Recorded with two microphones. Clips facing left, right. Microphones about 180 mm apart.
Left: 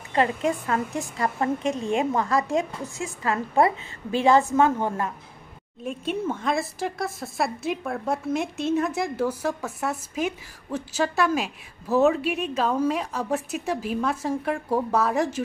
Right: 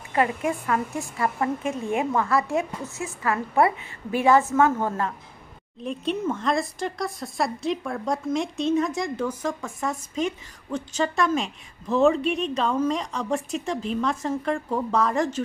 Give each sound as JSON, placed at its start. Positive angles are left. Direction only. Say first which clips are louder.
{"t": 0.1, "sound": "a woman's voice", "louder": "left 1 dB", "side_deg": 25}
{"t": 1.1, "sound": "a woman's voice", "louder": "right 1 dB", "side_deg": 35}
{"t": 1.6, "sound": "a woman's voice", "louder": "left 1 dB", "side_deg": 20}
{"t": 4.5, "sound": "a woman's voice", "louder": "even", "side_deg": 15}
{"t": 5.9, "sound": "a woman's voice", "louder": "right 1 dB", "side_deg": 5}